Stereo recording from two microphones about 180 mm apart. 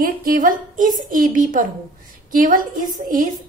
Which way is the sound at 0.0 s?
50° right (ahead or behind).